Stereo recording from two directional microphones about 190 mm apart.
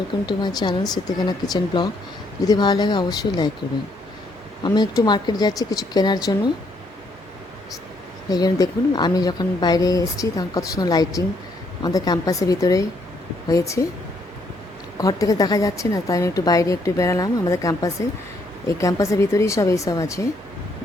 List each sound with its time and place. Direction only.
0.3 s speech: 20° left (ahead or behind)
4.6 s speech: 20° left (ahead or behind)
8.3 s a woman's voice: 20° left (ahead or behind)
14.9 s a woman's voice: 20° left (ahead or behind)